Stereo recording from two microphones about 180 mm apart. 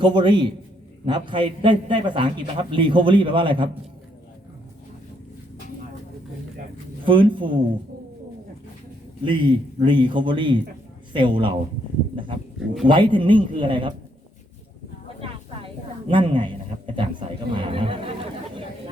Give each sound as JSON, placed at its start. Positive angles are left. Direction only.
{"t": 0.0, "sound": "a man's voice", "side_deg": -25}
{"t": 7.0, "sound": "a man's voice", "side_deg": -25}
{"t": 9.2, "sound": "a man's voice", "side_deg": -25}
{"t": 12.9, "sound": "a man's voice", "side_deg": -25}
{"t": 15.2, "sound": "a sound", "side_deg": -30}